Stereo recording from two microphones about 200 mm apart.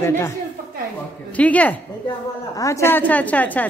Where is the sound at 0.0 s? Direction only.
15° left (ahead or behind).